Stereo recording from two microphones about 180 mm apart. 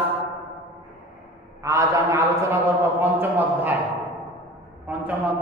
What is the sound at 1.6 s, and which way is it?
A man's voice, 15° right (ahead or behind).